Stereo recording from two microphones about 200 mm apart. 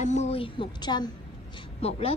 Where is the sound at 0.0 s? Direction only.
35° left (ahead or behind).